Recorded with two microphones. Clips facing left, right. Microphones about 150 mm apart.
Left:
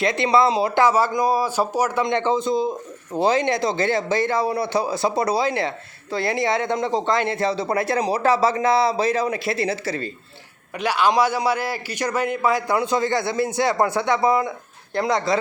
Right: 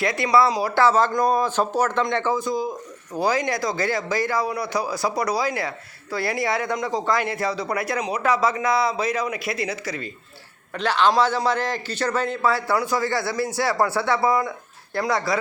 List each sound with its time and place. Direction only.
0.0 s speech: 25° left (ahead or behind)
10.8 s a man's voice: 10° left (ahead or behind)